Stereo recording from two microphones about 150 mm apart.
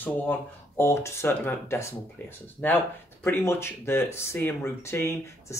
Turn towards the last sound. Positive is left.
turn(degrees=15)  # may be behind; listen again after turning